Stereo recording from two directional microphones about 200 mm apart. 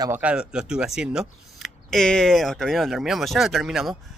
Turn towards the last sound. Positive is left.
turn(degrees=0)  # may be behind; listen again after turning